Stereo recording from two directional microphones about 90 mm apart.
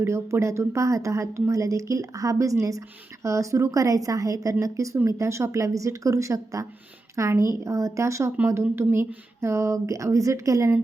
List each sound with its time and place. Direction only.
0.0 s speech: 30° right (ahead or behind)